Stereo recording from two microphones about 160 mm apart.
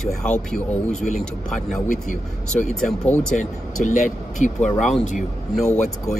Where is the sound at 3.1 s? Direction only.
50° left (ahead or behind).